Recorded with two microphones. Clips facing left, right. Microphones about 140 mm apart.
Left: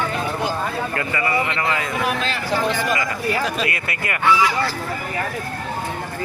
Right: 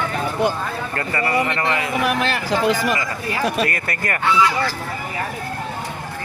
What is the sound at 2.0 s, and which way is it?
Speech, 65° right (ahead or behind).